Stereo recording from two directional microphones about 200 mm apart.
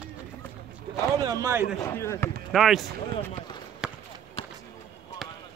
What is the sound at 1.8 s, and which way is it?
Speech, 15° left (ahead or behind).